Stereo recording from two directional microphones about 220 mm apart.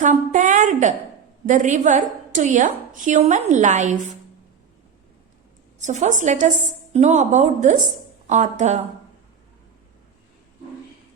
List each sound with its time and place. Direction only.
0.0 s a woman's voice: 35° right (ahead or behind)
5.8 s a woman's voice: 35° right (ahead or behind)